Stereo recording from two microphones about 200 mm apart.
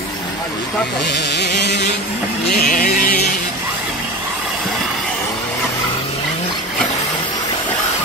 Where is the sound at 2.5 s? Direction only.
45° left (ahead or behind).